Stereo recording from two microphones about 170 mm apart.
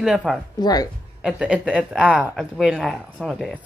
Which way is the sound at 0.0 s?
Centre (ahead or behind).